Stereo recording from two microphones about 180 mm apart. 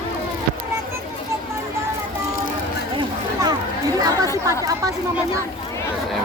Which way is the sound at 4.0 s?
20° right (ahead or behind).